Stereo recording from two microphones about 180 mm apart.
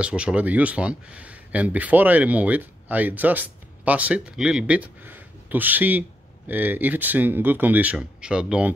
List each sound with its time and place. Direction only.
0.0 s speech: 5° right (ahead or behind)